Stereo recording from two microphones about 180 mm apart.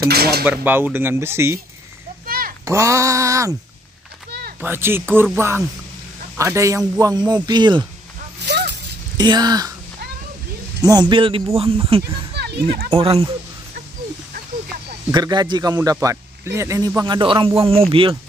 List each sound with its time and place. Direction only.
0.1 s speech: 60° right (ahead or behind)
0.5 s speech: 10° right (ahead or behind)
2.2 s a sound: 55° right (ahead or behind)
2.6 s speech: 15° right (ahead or behind)
4.3 s a sound: 60° right (ahead or behind)
4.6 s speech: 10° right (ahead or behind)
8.5 s a sound: 70° right (ahead or behind)
9.1 s speech: 25° right (ahead or behind)
10.8 s speech: 20° right (ahead or behind)
12.4 s music: 65° right (ahead or behind)
12.9 s speech: 35° right (ahead or behind)
15.0 s speech: 20° right (ahead or behind)